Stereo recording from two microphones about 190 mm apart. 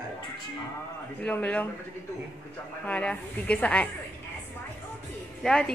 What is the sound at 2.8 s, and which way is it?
A woman's voice, 5° left (ahead or behind).